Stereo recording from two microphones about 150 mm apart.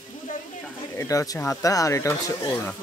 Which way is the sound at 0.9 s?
20° left (ahead or behind).